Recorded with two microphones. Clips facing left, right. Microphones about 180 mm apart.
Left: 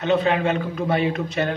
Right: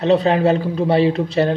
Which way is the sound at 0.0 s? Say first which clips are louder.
Right 5 dB; 35° right (ahead or behind).